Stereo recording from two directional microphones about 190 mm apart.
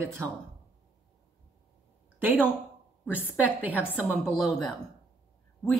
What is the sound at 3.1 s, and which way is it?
A woman's voice, 10° right (ahead or behind).